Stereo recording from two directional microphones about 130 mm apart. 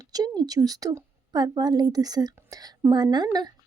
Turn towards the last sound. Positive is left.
turn(degrees=-30)  # may be behind; listen again after turning